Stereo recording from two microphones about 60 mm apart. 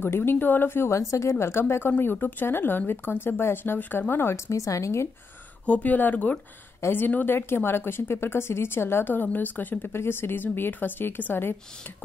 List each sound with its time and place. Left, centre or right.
0.0 s a woman's voice: left
0.9 s a woman's voice: left
1.3 s a woman's voice: left
4.5 s a woman's voice: left
5.7 s a woman's voice: left